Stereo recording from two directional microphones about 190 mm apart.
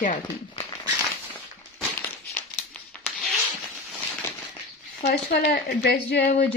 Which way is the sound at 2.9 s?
5° left (ahead or behind).